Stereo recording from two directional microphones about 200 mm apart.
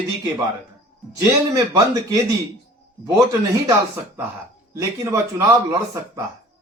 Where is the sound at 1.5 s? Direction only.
15° right (ahead or behind).